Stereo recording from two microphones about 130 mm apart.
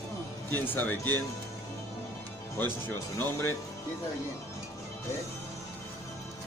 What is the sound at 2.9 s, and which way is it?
Speech, 15° left (ahead or behind).